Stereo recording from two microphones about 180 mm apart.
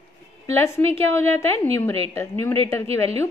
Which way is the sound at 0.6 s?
15° left (ahead or behind).